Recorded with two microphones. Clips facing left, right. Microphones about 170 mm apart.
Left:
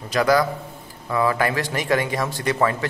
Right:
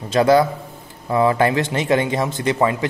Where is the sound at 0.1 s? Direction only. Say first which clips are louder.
Right 4 dB; 25° right (ahead or behind).